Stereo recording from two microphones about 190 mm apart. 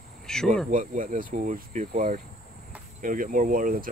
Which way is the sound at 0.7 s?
45° right (ahead or behind).